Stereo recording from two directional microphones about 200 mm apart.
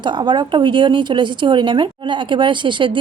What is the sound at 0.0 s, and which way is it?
A woman's voice, 25° right (ahead or behind).